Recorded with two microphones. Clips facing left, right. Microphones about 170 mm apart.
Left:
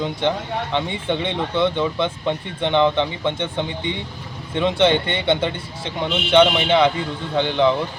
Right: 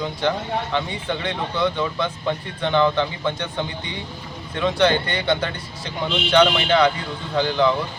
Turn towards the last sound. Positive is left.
turn(degrees=20)  # may be behind; listen again after turning